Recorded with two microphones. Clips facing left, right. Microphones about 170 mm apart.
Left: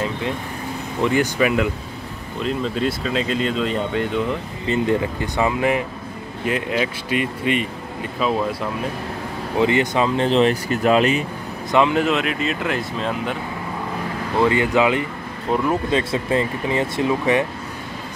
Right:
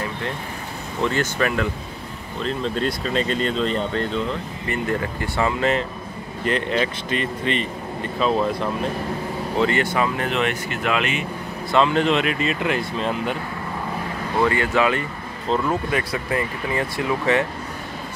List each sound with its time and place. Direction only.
1.0 s speech: 15° left (ahead or behind)
9.6 s speech: 15° left (ahead or behind); by 11.2 s 35° left (ahead or behind)
11.7 s speech: 10° left (ahead or behind)
14.4 s speech: 15° left (ahead or behind)